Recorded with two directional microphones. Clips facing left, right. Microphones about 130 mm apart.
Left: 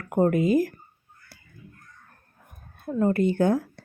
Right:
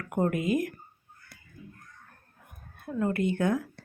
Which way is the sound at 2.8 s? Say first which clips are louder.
Left 5 dB; 30° left (ahead or behind).